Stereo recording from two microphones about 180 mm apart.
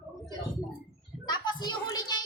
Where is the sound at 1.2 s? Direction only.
25° left (ahead or behind).